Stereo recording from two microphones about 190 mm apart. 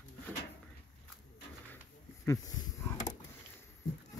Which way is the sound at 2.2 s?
15° left (ahead or behind).